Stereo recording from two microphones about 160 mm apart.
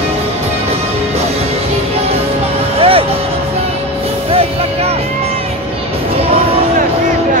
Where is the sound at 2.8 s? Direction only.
35° right (ahead or behind).